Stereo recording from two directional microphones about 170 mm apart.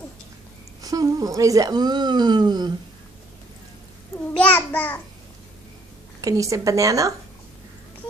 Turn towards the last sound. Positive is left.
turn(degrees=-20)  # may be behind; listen again after turning